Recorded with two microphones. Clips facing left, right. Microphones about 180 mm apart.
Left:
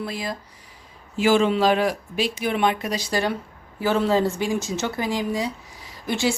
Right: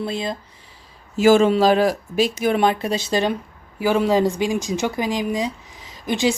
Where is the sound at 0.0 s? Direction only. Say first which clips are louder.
Right 4 dB; 25° right (ahead or behind).